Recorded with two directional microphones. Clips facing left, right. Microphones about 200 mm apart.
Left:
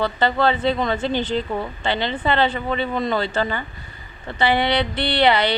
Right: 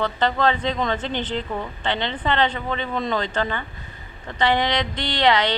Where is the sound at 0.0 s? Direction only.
10° left (ahead or behind).